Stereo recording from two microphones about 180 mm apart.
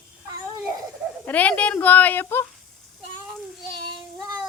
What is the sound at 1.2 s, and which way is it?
Speech, 10° left (ahead or behind).